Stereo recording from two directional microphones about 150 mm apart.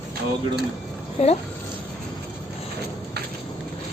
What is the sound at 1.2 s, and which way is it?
Speech, 45° left (ahead or behind).